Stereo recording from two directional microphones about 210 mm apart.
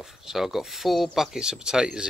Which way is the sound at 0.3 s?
Centre (ahead or behind).